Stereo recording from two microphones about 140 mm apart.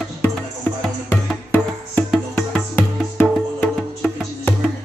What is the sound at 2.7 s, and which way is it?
Music, 15° left (ahead or behind).